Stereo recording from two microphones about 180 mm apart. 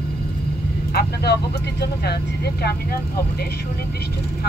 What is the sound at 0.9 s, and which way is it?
Speech, 65° left (ahead or behind).